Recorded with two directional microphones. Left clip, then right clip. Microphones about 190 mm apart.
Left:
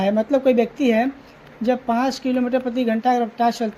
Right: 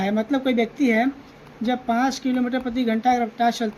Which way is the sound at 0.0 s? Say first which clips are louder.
Left 5 dB; 25° left (ahead or behind).